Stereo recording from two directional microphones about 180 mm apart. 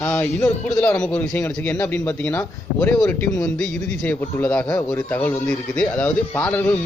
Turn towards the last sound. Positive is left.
turn(degrees=10)  # may be behind; listen again after turning